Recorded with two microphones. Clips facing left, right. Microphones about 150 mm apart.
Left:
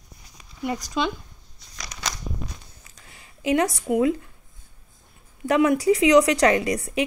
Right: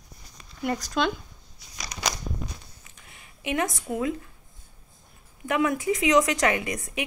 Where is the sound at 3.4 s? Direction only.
35° left (ahead or behind).